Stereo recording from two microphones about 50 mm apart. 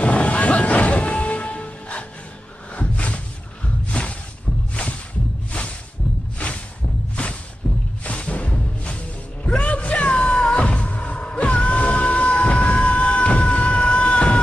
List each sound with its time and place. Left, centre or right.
0.0 s music: left
2.7 s a sound: left
3.9 s music: left
6.3 s a sound: left
7.2 s music: left
7.6 s music: centre
8.0 s music: left